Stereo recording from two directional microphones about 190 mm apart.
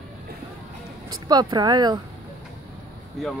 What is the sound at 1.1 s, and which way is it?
Speech, 20° right (ahead or behind).